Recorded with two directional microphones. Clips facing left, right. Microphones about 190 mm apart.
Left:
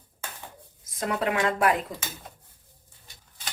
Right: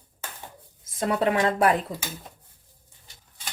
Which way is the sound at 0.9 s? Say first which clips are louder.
Right 3 dB; 30° right (ahead or behind).